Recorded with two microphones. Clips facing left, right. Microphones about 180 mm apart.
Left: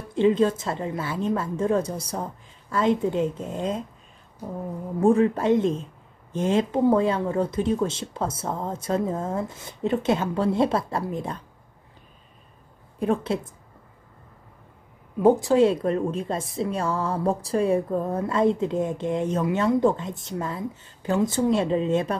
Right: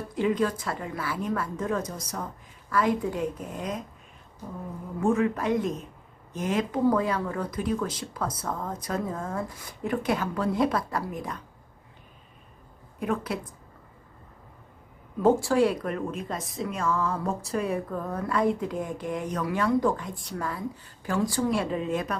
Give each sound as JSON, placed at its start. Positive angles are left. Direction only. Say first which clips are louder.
{"t": 0.1, "sound": "a woman's voice", "louder": "left 6 dB", "side_deg": 25}
{"t": 5.0, "sound": "a woman's voice", "louder": "left 5 dB", "side_deg": 35}
{"t": 13.0, "sound": "a woman's voice", "louder": "left 5 dB", "side_deg": 30}
{"t": 15.1, "sound": "a woman's voice", "louder": "left 4 dB", "side_deg": 15}